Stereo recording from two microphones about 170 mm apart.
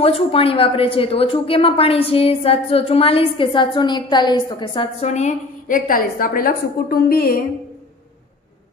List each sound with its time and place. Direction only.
0.0 s a woman's voice: 35° left (ahead or behind); by 7.4 s 60° left (ahead or behind)